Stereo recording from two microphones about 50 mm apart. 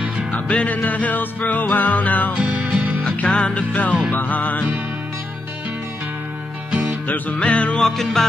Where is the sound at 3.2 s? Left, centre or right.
Left.